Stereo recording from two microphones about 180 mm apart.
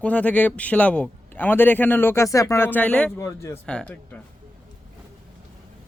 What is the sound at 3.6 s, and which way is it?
Speech, 5° left (ahead or behind).